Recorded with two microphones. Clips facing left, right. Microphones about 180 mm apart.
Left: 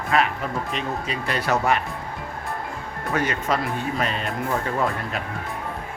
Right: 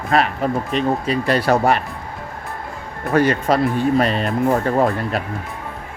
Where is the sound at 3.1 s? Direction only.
35° right (ahead or behind).